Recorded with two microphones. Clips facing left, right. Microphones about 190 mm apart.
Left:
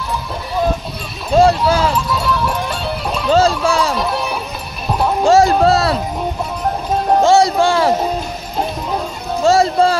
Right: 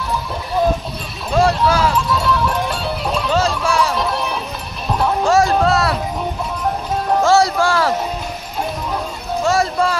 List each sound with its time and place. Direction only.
1.3 s speech: 25° left (ahead or behind)
2.1 s music: centre (ahead or behind)
3.3 s a sound: 30° left (ahead or behind)
3.9 s music: 5° left (ahead or behind)
5.2 s run: 25° left (ahead or behind)
7.2 s music: 20° left (ahead or behind)
7.5 s a sound: 20° left (ahead or behind)
9.4 s music: 30° left (ahead or behind)